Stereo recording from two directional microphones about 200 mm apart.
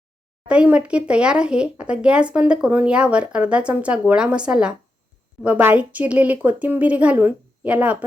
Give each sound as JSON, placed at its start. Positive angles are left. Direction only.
{"t": 0.4, "sound": "a woman's voice", "side_deg": -5}